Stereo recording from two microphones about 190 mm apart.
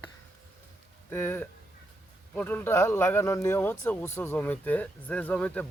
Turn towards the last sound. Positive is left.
turn(degrees=5)  # may be behind; listen again after turning